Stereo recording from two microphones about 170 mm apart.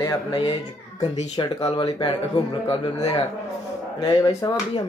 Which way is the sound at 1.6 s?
30° left (ahead or behind).